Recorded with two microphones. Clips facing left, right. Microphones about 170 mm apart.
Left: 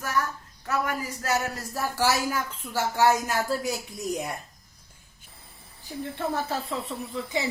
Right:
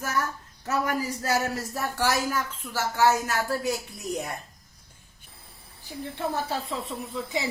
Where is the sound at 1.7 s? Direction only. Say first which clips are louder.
Left 3 dB; 5° left (ahead or behind).